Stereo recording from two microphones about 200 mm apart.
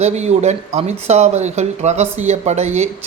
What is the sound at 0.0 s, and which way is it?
Speech, 35° right (ahead or behind).